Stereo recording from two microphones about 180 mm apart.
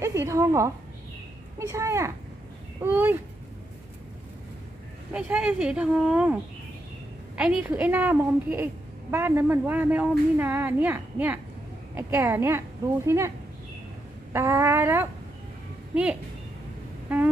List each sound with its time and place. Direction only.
0.0 s a woman's voice: 15° right (ahead or behind)
5.1 s a woman's voice: 5° right (ahead or behind)
7.3 s a woman's voice: 5° right (ahead or behind)
14.3 s a woman's voice: 15° right (ahead or behind)